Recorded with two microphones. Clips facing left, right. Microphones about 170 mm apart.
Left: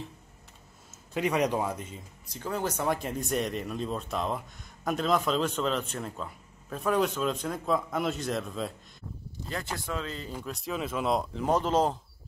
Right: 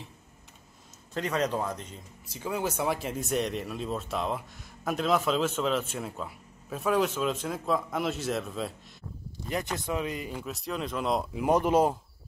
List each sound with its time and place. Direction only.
1.1 s speech: 10° left (ahead or behind)
2.2 s a man's voice: 10° right (ahead or behind)
9.5 s speech: 20° right (ahead or behind)
10.4 s a man's voice: centre (ahead or behind)
11.3 s speech: 10° right (ahead or behind)